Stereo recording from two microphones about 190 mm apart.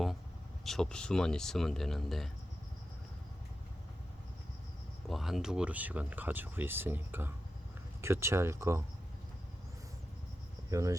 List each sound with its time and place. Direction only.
0.6 s speech: centre (ahead or behind)
5.0 s speech: centre (ahead or behind)
10.7 s cricket: 15° right (ahead or behind)